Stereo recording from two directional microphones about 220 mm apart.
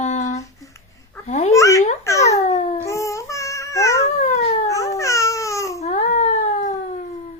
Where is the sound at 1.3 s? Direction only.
30° left (ahead or behind).